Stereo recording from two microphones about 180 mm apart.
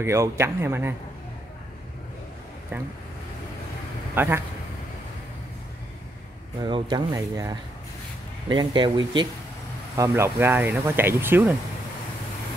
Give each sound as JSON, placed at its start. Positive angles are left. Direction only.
{"t": 0.0, "sound": "speech", "side_deg": -15}
{"t": 4.1, "sound": "speech", "side_deg": -10}
{"t": 6.6, "sound": "speech", "side_deg": -25}